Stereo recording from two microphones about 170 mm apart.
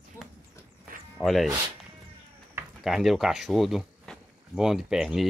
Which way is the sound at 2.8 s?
Centre (ahead or behind).